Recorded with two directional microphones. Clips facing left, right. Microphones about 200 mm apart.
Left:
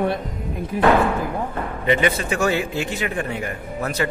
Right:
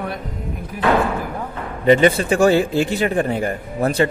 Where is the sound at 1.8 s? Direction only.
35° right (ahead or behind).